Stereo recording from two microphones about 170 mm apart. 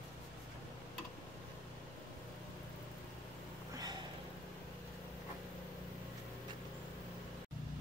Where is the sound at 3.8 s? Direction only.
25° right (ahead or behind).